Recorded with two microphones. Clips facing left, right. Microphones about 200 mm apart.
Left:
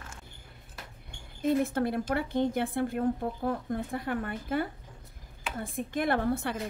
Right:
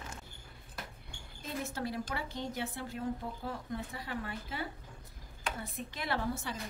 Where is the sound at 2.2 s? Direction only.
55° left (ahead or behind).